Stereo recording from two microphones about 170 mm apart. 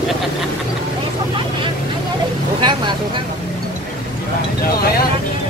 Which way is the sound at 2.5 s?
25° right (ahead or behind).